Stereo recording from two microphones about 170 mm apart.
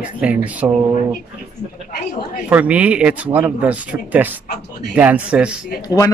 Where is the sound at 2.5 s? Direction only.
10° right (ahead or behind).